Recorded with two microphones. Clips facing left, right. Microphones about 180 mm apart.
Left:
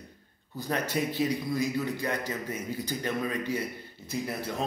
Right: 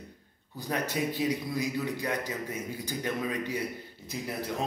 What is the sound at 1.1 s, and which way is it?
Speech, 15° right (ahead or behind).